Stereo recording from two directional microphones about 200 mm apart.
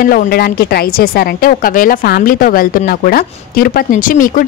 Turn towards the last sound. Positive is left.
turn(degrees=45)  # may be behind; listen again after turning